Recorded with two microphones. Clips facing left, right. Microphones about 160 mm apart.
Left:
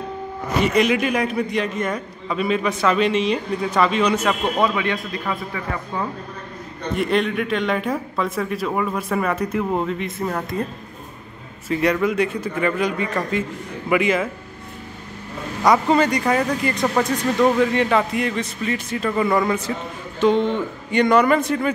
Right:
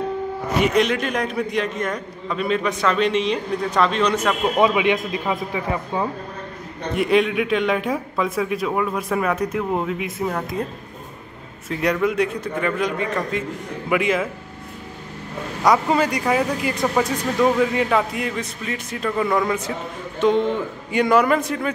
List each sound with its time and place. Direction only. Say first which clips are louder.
0.7 s speech: left 3 dB; 5° left (ahead or behind)
4.6 s a man's voice: right 3 dB; 15° right (ahead or behind)
7.0 s speech: right 3 dB; centre (ahead or behind)
11.7 s speech: left 1 dB; centre (ahead or behind)
15.6 s speech: left 1 dB; centre (ahead or behind)